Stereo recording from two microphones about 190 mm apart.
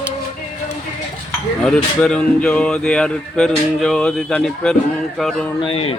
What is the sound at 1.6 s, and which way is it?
Speech, 5° left (ahead or behind).